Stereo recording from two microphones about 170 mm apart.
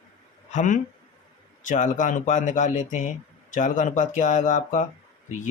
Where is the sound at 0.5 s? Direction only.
50° left (ahead or behind).